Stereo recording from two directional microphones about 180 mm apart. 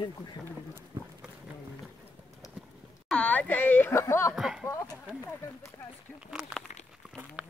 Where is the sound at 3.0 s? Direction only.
5° left (ahead or behind).